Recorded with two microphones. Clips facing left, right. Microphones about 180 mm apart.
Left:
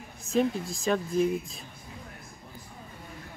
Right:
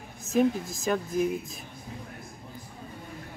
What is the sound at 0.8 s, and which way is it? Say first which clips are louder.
Speech: left 1 dB; 5° right (ahead or behind).